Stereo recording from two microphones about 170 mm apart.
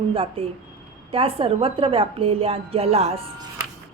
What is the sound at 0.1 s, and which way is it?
A woman's voice, 30° right (ahead or behind).